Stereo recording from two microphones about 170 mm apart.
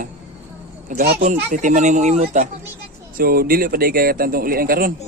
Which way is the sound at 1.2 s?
45° right (ahead or behind).